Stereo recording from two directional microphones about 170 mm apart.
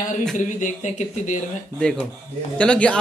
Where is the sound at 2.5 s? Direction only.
5° left (ahead or behind).